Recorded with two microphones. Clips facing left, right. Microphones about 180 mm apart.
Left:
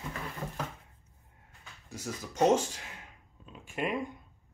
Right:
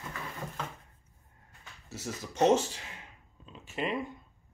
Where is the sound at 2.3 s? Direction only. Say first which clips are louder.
Right 1 dB; 10° left (ahead or behind).